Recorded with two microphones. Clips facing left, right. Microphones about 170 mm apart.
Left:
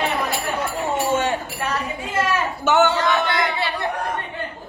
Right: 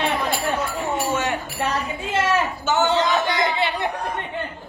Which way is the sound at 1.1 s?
30° left (ahead or behind).